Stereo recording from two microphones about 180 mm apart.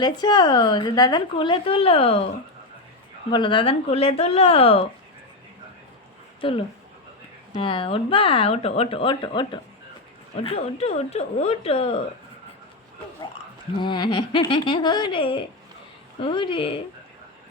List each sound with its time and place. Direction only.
0.0 s a woman's voice: 25° left (ahead or behind)
3.3 s speech: 25° left (ahead or behind)
6.4 s a woman's voice: 30° left (ahead or behind)
13.8 s a woman's voice: 25° left (ahead or behind)